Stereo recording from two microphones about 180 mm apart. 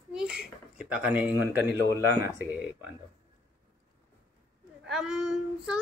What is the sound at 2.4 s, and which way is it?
Speech, 10° right (ahead or behind).